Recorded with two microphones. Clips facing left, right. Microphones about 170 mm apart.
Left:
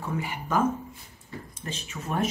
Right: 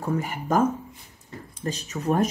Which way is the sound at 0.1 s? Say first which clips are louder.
Right 4 dB; 40° right (ahead or behind).